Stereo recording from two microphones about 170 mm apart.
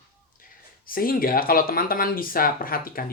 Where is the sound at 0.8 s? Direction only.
60° left (ahead or behind).